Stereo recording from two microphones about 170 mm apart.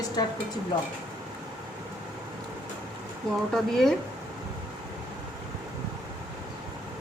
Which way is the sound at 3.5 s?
Centre (ahead or behind).